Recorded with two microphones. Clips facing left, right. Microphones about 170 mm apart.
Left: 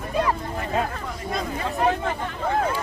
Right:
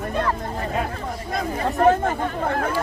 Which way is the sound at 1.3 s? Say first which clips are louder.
Right 4 dB; 50° right (ahead or behind).